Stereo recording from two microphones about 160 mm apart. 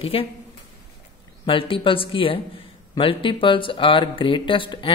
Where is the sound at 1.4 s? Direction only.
35° left (ahead or behind).